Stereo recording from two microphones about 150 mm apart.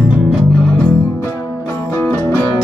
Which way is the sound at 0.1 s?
5° right (ahead or behind).